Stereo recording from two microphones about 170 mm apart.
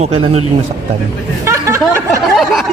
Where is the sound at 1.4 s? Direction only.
15° right (ahead or behind).